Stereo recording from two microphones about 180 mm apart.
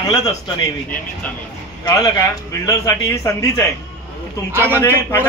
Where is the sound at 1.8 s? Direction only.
20° left (ahead or behind).